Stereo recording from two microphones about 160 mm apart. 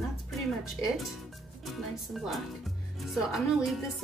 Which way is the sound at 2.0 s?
Centre (ahead or behind).